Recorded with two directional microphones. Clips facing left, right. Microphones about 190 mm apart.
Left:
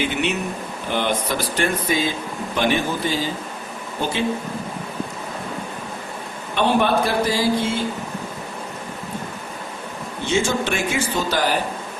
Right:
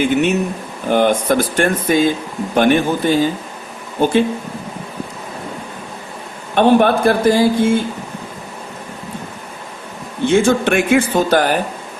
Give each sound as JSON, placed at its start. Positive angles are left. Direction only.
{"t": 0.0, "sound": "speech", "side_deg": -45}
{"t": 6.5, "sound": "speech", "side_deg": -50}
{"t": 10.2, "sound": "a man's voice", "side_deg": -55}